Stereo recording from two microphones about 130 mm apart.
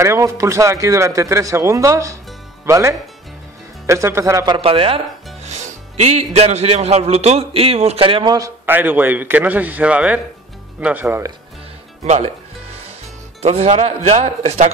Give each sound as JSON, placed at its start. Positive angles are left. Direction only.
{"t": 0.0, "sound": "speech", "side_deg": -25}
{"t": 4.6, "sound": "speech", "side_deg": -45}
{"t": 8.4, "sound": "a man's voice", "side_deg": -20}
{"t": 12.0, "sound": "speech", "side_deg": -55}
{"t": 13.4, "sound": "speech", "side_deg": -55}